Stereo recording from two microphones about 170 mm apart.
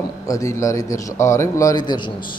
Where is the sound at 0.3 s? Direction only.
20° left (ahead or behind).